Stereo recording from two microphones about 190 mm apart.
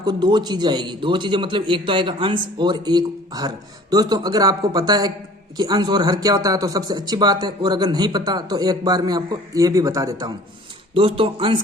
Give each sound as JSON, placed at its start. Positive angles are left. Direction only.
{"t": 0.0, "sound": "a man's voice", "side_deg": -20}